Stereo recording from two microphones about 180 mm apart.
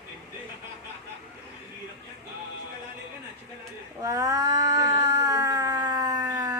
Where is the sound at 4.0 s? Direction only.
20° right (ahead or behind).